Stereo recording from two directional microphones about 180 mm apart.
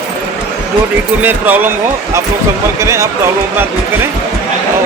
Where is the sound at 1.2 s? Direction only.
10° right (ahead or behind).